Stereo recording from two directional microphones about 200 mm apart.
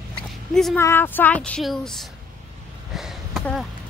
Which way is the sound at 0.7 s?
10° left (ahead or behind).